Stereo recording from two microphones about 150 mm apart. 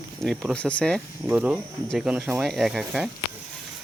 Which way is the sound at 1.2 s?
10° right (ahead or behind).